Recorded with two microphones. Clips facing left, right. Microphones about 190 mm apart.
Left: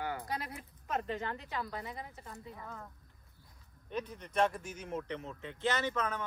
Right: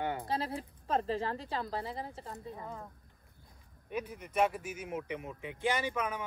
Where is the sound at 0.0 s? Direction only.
25° right (ahead or behind).